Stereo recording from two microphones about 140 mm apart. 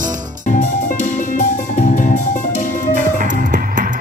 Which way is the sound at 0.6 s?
70° left (ahead or behind).